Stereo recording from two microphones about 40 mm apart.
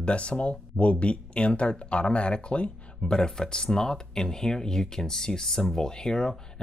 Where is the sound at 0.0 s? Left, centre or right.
Left.